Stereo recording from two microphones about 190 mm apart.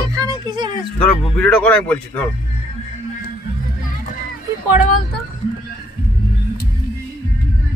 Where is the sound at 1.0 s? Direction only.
5° left (ahead or behind).